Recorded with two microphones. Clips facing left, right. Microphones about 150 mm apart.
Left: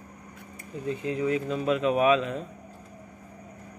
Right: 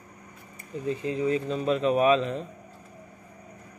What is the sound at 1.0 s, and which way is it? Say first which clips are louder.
Speech: even; 30° right (ahead or behind).